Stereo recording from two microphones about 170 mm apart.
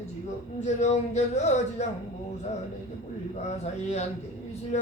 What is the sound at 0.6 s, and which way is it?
Speech, 40° left (ahead or behind).